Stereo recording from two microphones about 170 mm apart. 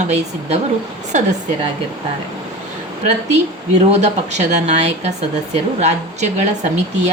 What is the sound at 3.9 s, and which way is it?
Speech, 45° right (ahead or behind).